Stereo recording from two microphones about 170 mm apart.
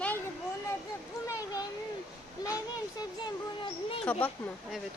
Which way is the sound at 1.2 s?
20° left (ahead or behind).